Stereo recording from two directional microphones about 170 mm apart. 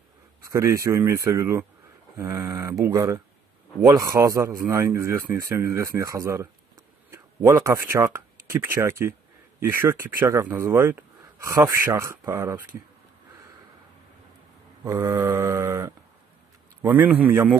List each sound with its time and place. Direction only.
0.4 s speech: 20° right (ahead or behind)
14.9 s speech: 15° right (ahead or behind)